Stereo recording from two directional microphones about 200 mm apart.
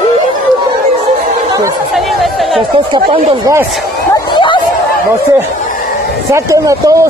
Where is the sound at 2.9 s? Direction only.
20° right (ahead or behind).